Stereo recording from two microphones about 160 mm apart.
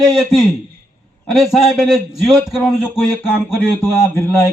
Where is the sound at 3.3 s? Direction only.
5° right (ahead or behind).